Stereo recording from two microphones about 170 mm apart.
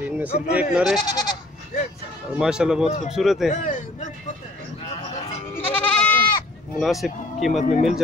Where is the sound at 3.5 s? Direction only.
45° left (ahead or behind).